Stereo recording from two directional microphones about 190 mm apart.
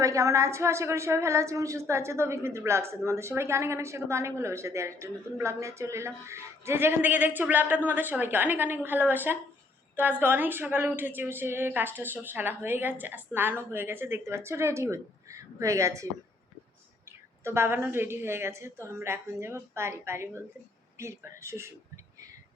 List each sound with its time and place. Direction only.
0.0 s a woman's voice: 15° right (ahead or behind)
17.1 s a woman's voice: 15° right (ahead or behind)